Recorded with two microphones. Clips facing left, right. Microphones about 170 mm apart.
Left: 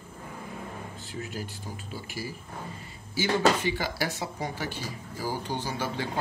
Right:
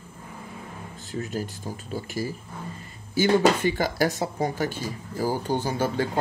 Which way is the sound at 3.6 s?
45° right (ahead or behind).